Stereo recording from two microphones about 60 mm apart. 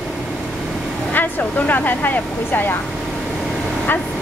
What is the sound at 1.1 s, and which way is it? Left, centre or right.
A woman's voice, left.